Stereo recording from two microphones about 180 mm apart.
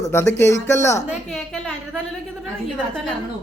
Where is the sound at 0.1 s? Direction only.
15° left (ahead or behind).